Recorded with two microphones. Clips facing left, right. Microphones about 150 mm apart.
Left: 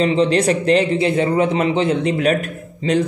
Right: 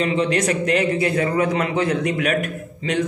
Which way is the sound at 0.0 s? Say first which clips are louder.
Left 4 dB; 30° left (ahead or behind).